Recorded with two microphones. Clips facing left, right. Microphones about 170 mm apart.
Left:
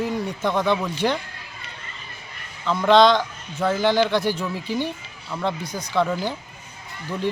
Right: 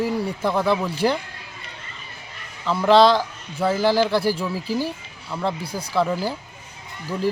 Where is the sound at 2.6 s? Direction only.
5° right (ahead or behind).